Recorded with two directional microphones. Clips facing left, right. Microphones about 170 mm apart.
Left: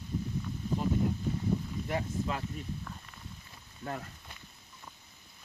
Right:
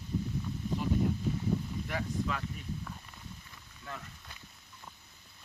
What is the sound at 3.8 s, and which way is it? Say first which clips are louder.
Speech: left 6 dB; 50° left (ahead or behind).